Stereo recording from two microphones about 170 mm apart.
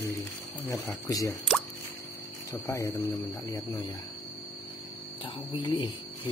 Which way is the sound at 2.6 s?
20° left (ahead or behind).